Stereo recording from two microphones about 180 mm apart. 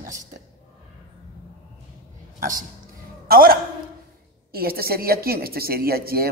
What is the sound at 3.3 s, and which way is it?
A man's voice, 55° right (ahead or behind).